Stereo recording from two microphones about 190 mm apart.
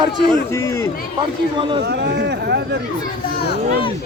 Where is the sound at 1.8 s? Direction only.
60° right (ahead or behind).